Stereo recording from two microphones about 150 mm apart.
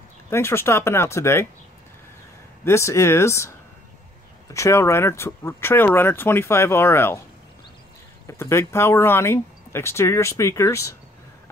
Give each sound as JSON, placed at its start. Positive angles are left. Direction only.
{"t": 0.3, "sound": "speech", "side_deg": 15}
{"t": 2.6, "sound": "speech", "side_deg": 20}
{"t": 4.6, "sound": "speech", "side_deg": 20}
{"t": 8.3, "sound": "speech", "side_deg": 15}